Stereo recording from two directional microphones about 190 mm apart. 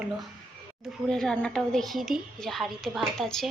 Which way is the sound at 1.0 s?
5° left (ahead or behind).